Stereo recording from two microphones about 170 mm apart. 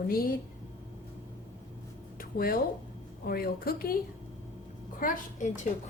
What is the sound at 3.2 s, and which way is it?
Speech, 60° left (ahead or behind).